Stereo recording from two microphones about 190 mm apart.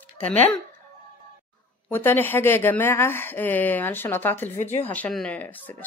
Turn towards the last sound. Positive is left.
turn(degrees=10)  # may be behind; listen again after turning